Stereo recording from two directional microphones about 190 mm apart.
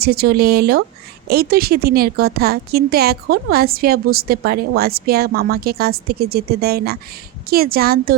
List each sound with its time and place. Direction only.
0.0 s a woman's voice: 55° right (ahead or behind)